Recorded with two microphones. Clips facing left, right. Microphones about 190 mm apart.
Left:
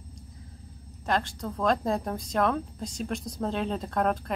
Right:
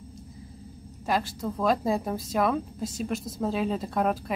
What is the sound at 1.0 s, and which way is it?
A woman's voice, 5° right (ahead or behind).